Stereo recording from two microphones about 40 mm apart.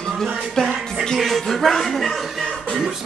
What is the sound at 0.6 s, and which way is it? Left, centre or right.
Speech, centre.